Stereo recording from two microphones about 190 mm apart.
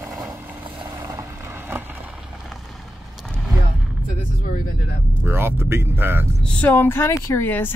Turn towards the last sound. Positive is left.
turn(degrees=10)  # may be behind; listen again after turning